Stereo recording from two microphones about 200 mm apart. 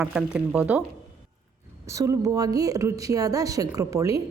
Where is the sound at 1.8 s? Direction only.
15° right (ahead or behind).